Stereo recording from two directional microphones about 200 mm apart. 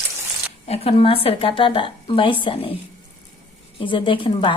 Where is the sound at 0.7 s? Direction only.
30° left (ahead or behind).